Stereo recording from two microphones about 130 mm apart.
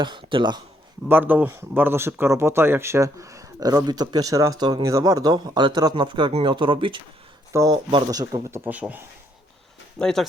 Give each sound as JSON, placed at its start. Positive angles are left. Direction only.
{"t": 0.0, "sound": "speech", "side_deg": -40}
{"t": 1.0, "sound": "speech", "side_deg": -15}
{"t": 7.5, "sound": "speech", "side_deg": -25}
{"t": 7.9, "sound": "speech", "side_deg": -35}
{"t": 8.2, "sound": "speech", "side_deg": -25}
{"t": 10.0, "sound": "speech", "side_deg": 5}